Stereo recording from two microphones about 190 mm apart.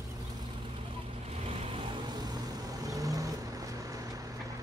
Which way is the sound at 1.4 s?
30° right (ahead or behind).